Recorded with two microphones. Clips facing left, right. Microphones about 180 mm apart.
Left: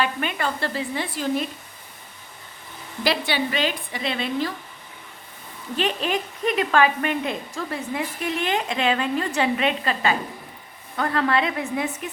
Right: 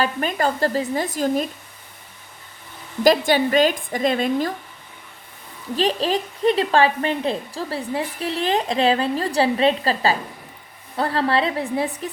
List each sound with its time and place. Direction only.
0.0 s a woman's voice: 40° right (ahead or behind)
3.0 s a woman's voice: 45° right (ahead or behind)
5.7 s a woman's voice: 35° right (ahead or behind)